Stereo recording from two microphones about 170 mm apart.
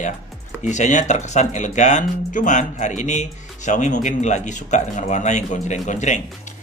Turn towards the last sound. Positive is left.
turn(degrees=45)  # may be behind; listen again after turning